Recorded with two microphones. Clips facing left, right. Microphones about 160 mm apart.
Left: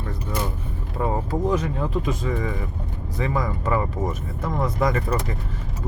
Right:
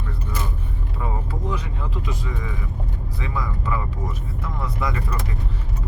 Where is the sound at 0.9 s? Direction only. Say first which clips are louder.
Left 7 dB; 45° left (ahead or behind).